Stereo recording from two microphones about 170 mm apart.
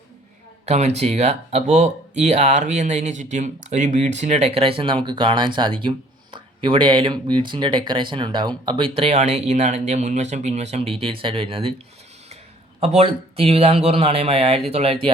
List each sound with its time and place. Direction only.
0.6 s speech: 40° right (ahead or behind)
12.8 s speech: 35° right (ahead or behind)